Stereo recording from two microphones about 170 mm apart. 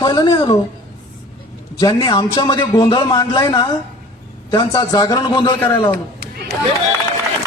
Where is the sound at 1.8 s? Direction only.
25° left (ahead or behind).